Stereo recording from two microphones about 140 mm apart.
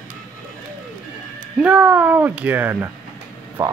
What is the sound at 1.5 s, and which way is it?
Speech, 10° right (ahead or behind).